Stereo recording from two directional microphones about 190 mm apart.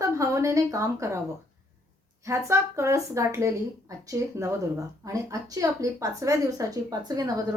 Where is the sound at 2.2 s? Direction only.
15° right (ahead or behind).